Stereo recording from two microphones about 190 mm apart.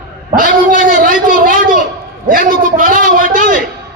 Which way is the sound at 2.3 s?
45° right (ahead or behind).